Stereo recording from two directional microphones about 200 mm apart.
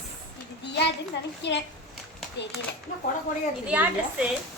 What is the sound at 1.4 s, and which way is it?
Speech, 60° left (ahead or behind).